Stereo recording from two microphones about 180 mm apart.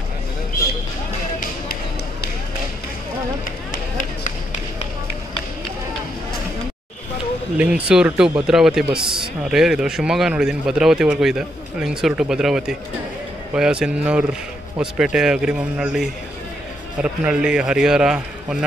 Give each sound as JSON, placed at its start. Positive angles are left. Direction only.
{"t": 7.5, "sound": "speech", "side_deg": -5}
{"t": 9.0, "sound": "a man's voice", "side_deg": -25}
{"t": 9.4, "sound": "speech", "side_deg": -5}